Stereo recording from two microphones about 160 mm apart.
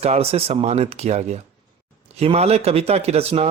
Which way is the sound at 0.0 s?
40° right (ahead or behind).